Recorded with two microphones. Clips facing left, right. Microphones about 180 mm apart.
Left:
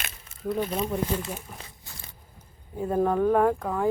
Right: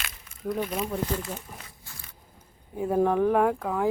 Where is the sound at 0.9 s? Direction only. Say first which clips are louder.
Left 1 dB; 15° left (ahead or behind).